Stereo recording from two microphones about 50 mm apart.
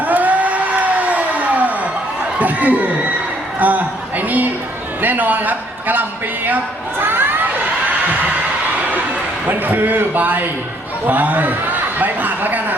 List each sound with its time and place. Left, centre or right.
0.0 s a sound: right
3.6 s a man's voice: right
7.0 s crowd: right
9.5 s a man's voice: right